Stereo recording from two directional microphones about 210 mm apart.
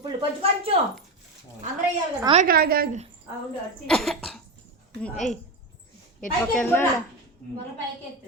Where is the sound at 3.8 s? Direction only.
Centre (ahead or behind).